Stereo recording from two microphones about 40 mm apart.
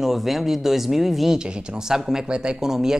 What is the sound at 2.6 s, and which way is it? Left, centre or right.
Speech, centre.